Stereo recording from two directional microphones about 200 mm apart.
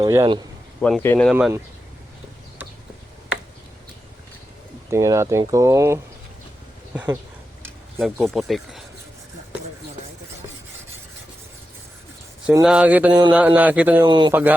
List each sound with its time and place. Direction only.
0.0 s speech: 15° right (ahead or behind)
0.8 s speech: 5° left (ahead or behind)
1.3 s speech: 10° right (ahead or behind)
4.9 s speech: 15° right (ahead or behind)
7.6 s a sound: 10° right (ahead or behind)
8.2 s speech: centre (ahead or behind)
12.6 s speech: 5° right (ahead or behind)
14.0 s speech: 20° right (ahead or behind)